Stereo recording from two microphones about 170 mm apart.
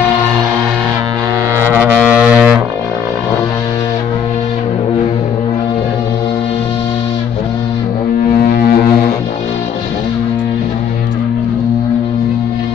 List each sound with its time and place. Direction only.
1.7 s music: 5° right (ahead or behind)
8.5 s music: 60° left (ahead or behind)